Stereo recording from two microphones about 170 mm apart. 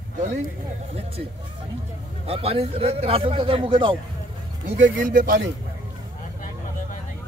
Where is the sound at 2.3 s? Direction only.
35° right (ahead or behind).